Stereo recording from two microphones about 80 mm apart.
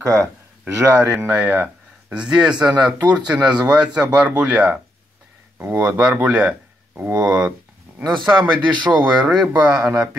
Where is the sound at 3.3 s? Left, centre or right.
Right.